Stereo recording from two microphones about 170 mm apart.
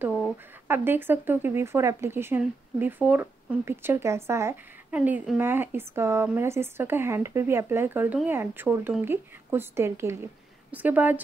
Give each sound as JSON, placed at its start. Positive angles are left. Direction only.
{"t": 0.0, "sound": "speech", "side_deg": -10}